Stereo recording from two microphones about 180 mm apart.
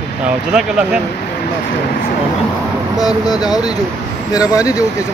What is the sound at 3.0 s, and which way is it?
Speech, 20° left (ahead or behind).